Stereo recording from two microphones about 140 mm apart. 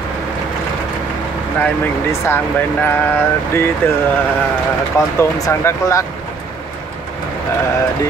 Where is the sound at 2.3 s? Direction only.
15° left (ahead or behind).